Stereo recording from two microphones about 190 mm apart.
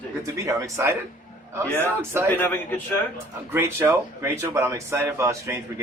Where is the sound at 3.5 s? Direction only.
10° right (ahead or behind).